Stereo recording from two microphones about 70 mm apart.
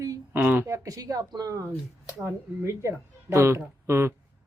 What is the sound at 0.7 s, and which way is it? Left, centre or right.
Speech, right.